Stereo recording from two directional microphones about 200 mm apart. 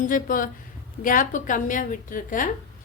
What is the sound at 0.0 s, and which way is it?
A woman's voice, 40° left (ahead or behind).